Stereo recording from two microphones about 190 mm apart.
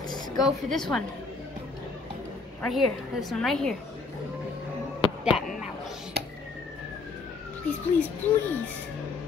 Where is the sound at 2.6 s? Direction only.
Centre (ahead or behind).